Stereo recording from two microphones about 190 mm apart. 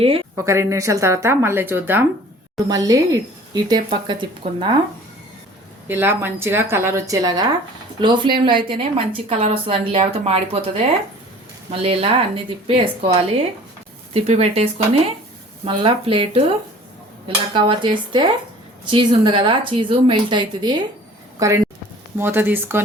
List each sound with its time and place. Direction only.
0.3 s a woman's voice: 15° right (ahead or behind)
5.9 s a woman's voice: 10° right (ahead or behind)